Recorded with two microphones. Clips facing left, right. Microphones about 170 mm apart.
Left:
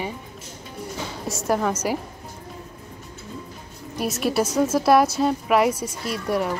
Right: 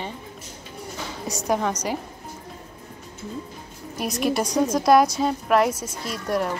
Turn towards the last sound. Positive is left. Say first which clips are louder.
# left 1 dB
turn(degrees=5)  # may be behind; listen again after turning